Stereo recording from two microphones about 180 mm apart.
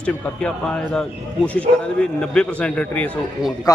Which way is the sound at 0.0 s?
5° left (ahead or behind).